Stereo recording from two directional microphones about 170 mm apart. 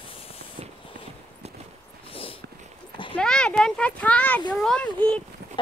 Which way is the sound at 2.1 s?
35° left (ahead or behind).